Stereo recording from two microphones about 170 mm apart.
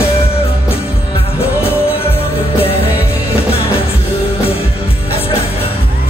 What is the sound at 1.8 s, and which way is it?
Music, 35° left (ahead or behind).